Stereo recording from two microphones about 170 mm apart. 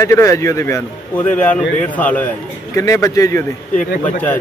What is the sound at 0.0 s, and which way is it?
A man's voice, 15° left (ahead or behind).